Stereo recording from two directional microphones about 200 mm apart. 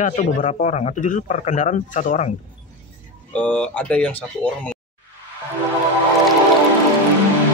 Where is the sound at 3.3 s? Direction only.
5° left (ahead or behind).